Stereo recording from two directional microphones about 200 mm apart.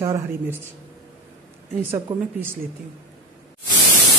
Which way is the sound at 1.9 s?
10° right (ahead or behind).